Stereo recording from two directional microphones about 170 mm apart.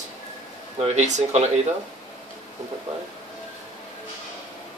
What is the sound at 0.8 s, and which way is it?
Speech, 40° right (ahead or behind).